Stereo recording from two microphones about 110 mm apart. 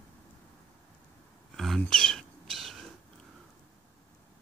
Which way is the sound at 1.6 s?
5° left (ahead or behind).